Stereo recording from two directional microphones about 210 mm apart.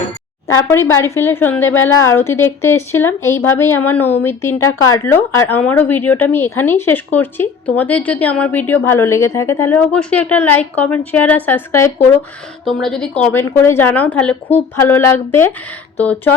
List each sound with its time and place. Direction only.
0.9 s a woman's voice: 10° left (ahead or behind)
4.5 s a woman's voice: 80° left
4.9 s a woman's voice: 10° left (ahead or behind)